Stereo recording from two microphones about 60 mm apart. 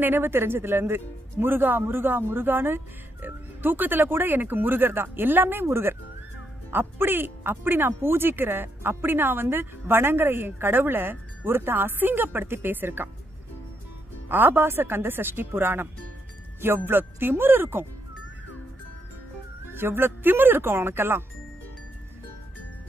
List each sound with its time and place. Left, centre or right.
0.0 s speech: right
14.3 s speech: right
19.7 s speech: right